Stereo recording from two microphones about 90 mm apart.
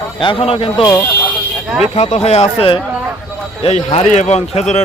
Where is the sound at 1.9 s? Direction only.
90° left.